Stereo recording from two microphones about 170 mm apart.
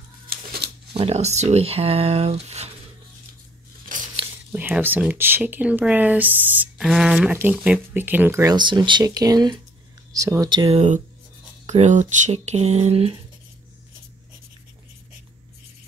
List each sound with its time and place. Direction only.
0.3 s scissors: 65° right (ahead or behind)
0.9 s speech: 40° right (ahead or behind)
4.5 s speech: 10° right (ahead or behind)
8.5 s speech: 25° right (ahead or behind)
11.6 s speech: 40° right (ahead or behind)